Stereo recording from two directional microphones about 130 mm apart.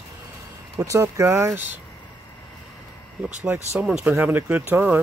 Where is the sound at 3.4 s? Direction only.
20° right (ahead or behind).